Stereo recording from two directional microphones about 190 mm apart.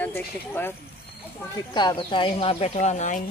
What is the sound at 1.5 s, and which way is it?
Speech, 20° left (ahead or behind).